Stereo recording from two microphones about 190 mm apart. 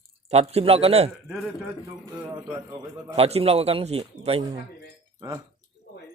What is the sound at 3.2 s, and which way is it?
A man's voice, 30° right (ahead or behind).